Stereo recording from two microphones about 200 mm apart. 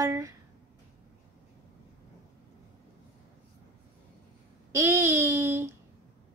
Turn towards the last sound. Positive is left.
turn(degrees=-10)  # may be behind; listen again after turning